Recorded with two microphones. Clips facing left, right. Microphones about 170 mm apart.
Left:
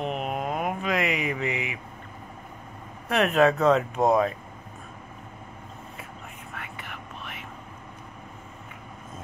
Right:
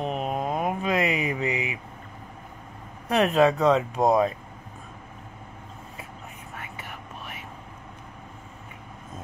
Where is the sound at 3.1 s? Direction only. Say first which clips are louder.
Right 1 dB; 30° right (ahead or behind).